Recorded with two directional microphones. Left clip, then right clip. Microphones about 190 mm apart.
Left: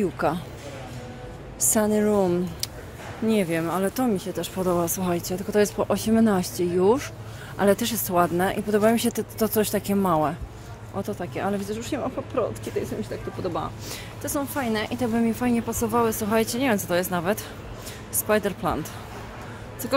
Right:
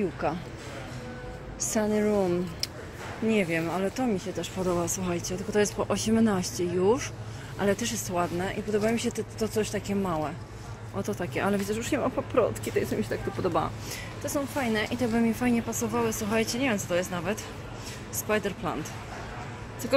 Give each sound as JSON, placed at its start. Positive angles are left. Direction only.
{"t": 0.0, "sound": "speech", "side_deg": 20}
{"t": 1.7, "sound": "speech", "side_deg": 20}
{"t": 11.0, "sound": "speech", "side_deg": 0}
{"t": 14.2, "sound": "speech", "side_deg": 20}